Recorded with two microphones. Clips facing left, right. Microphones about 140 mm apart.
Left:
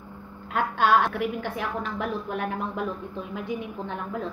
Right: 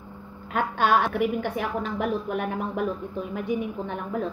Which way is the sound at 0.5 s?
50° right (ahead or behind).